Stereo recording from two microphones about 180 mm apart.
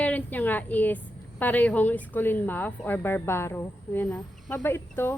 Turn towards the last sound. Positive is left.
turn(degrees=15)  # may be behind; listen again after turning